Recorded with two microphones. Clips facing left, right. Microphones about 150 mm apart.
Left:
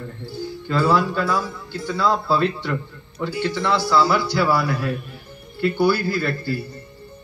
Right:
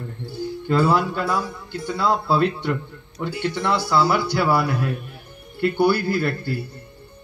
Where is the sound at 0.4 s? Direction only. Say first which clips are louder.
Right 2 dB; 55° right (ahead or behind).